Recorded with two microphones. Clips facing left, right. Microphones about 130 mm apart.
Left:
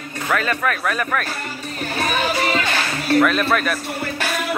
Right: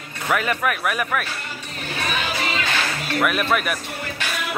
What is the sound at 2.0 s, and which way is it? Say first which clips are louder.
Music: left 5 dB; 40° left (ahead or behind).